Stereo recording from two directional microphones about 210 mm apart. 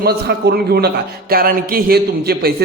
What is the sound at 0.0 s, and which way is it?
A man's voice, 50° right (ahead or behind).